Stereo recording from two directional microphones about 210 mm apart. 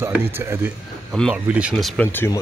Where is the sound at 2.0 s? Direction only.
10° left (ahead or behind).